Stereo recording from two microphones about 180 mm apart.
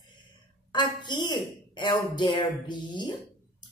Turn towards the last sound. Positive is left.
turn(degrees=25)  # may be behind; listen again after turning